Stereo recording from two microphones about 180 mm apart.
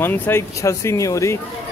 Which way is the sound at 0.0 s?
10° left (ahead or behind).